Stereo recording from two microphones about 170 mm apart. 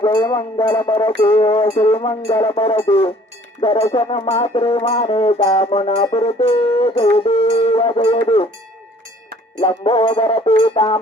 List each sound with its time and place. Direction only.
0.0 s a sound: 25° left (ahead or behind)
1.3 s music: 35° left (ahead or behind)
9.6 s music: 35° left (ahead or behind)